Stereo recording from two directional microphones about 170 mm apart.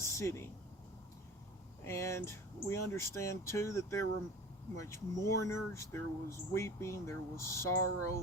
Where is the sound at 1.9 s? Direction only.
15° left (ahead or behind).